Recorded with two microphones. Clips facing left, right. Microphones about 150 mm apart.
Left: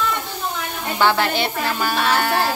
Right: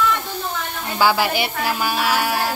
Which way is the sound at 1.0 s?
10° right (ahead or behind).